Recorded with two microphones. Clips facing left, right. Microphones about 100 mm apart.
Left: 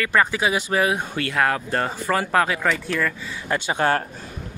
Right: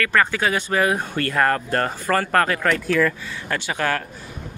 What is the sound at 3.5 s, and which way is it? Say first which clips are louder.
Speech: left 3 dB; 20° left (ahead or behind).